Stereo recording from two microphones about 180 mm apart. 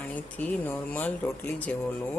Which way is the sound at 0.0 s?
10° left (ahead or behind).